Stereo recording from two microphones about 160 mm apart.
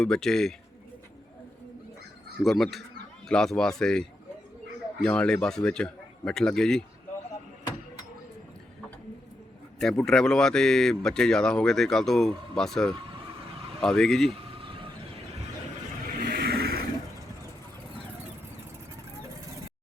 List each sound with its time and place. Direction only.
0.0 s speech: 5° left (ahead or behind)
2.4 s speech: centre (ahead or behind)
5.0 s speech: 5° left (ahead or behind)
9.7 s speech: 5° left (ahead or behind)
16.2 s vehicle: 80° right